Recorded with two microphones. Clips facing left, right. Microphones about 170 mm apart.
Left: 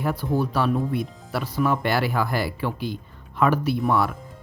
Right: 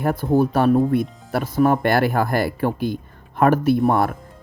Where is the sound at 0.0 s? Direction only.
50° right (ahead or behind).